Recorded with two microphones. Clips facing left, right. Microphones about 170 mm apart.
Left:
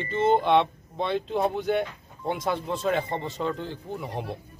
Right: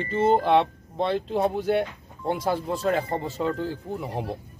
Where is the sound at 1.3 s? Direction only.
35° right (ahead or behind).